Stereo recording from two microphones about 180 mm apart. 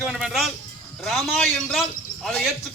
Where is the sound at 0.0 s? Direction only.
Centre (ahead or behind).